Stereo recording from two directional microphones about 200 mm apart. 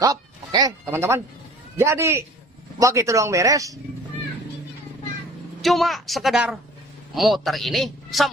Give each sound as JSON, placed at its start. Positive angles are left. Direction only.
{"t": 0.0, "sound": "speech", "side_deg": -20}
{"t": 5.6, "sound": "a man's voice", "side_deg": 0}